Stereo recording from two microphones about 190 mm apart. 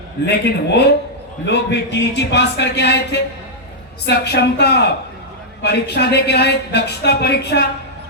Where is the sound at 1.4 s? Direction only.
65° left (ahead or behind).